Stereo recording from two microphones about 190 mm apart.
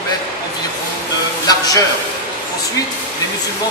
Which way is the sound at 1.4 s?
20° left (ahead or behind).